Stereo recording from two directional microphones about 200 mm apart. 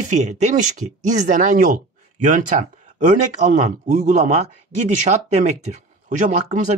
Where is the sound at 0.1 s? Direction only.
35° right (ahead or behind).